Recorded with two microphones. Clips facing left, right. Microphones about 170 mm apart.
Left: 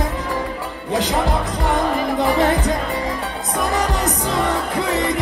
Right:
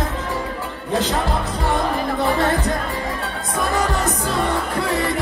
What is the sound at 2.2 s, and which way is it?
Music, 15° left (ahead or behind).